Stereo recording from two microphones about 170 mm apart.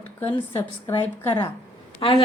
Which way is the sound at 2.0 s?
25° left (ahead or behind).